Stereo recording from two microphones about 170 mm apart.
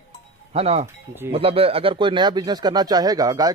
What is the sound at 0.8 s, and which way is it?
Speech, 15° right (ahead or behind).